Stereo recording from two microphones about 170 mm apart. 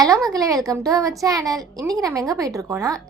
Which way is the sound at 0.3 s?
20° right (ahead or behind).